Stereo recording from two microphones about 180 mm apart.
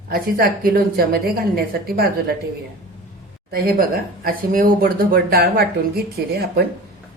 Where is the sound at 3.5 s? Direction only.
55° right (ahead or behind).